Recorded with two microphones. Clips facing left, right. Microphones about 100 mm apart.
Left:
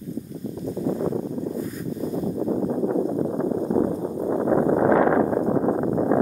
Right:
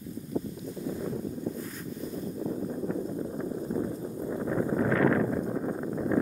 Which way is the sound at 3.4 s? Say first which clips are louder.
Left 10 dB; 80° left.